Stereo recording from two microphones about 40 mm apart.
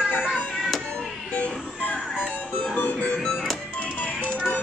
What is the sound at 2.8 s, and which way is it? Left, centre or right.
Music, left.